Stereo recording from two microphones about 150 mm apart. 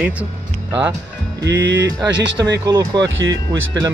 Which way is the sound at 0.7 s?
15° right (ahead or behind).